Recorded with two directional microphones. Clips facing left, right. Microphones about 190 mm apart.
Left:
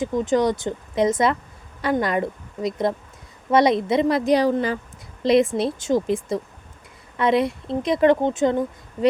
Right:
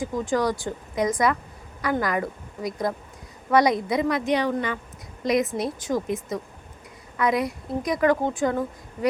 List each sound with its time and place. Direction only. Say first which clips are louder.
0.0 s a woman's voice: left 4 dB; 20° left (ahead or behind)